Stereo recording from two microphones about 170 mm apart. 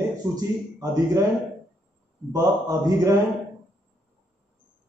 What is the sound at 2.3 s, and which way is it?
Speech, 20° right (ahead or behind).